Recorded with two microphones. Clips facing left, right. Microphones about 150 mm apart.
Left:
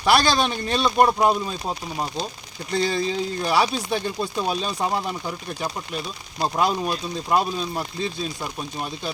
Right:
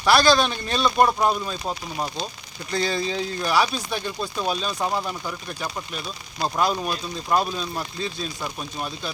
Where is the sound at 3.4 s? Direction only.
25° left (ahead or behind).